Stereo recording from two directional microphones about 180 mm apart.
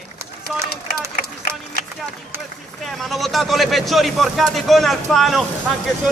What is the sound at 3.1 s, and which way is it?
A man's voice, centre (ahead or behind).